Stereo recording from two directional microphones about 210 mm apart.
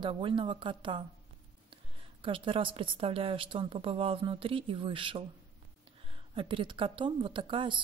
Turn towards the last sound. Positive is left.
turn(degrees=-25)  # may be behind; listen again after turning